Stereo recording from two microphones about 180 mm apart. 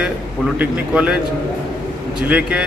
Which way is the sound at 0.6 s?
5° right (ahead or behind).